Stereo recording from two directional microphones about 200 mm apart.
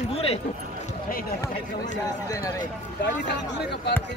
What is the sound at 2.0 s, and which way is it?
Speech, 15° left (ahead or behind).